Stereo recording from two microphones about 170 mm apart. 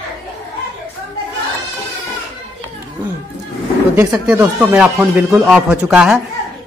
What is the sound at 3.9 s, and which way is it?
Speech, 20° right (ahead or behind).